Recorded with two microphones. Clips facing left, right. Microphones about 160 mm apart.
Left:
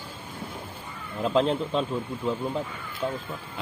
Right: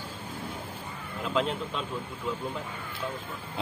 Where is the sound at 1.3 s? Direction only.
35° left (ahead or behind).